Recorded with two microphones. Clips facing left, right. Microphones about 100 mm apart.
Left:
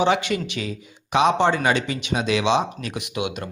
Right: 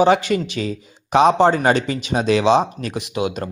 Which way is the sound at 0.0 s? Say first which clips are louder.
Right 5 dB; 40° right (ahead or behind).